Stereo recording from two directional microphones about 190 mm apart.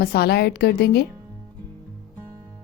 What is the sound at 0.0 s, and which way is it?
A woman's voice, 55° left (ahead or behind).